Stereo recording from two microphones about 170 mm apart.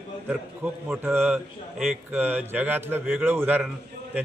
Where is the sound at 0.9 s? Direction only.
10° right (ahead or behind).